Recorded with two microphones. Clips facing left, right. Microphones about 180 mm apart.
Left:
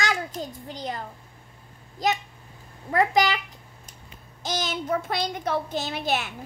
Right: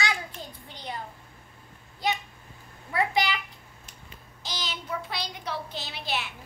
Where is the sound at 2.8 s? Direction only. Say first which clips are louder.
Left 5 dB; 40° left (ahead or behind).